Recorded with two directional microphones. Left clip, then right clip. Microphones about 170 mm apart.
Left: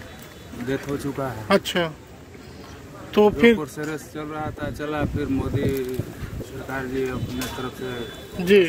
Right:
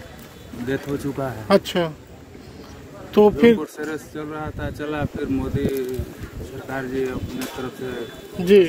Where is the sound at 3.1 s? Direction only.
30° right (ahead or behind).